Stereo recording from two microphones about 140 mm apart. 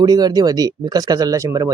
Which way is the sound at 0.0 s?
30° right (ahead or behind).